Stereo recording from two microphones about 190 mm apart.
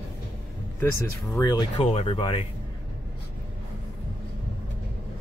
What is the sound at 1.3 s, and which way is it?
Speech, 25° left (ahead or behind).